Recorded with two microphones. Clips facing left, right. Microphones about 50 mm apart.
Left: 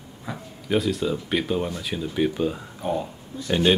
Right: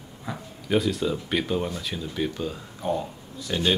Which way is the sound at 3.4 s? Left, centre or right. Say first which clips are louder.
Left 5 dB; left.